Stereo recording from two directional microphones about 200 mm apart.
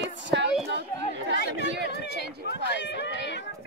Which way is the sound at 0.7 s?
60° right (ahead or behind).